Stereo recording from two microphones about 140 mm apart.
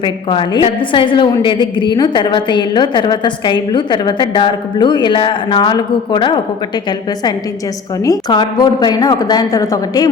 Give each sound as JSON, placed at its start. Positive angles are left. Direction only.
{"t": 0.0, "sound": "a woman's voice", "side_deg": 35}
{"t": 8.0, "sound": "a woman's voice", "side_deg": 30}